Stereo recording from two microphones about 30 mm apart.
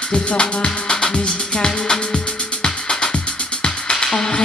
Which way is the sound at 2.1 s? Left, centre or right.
Left.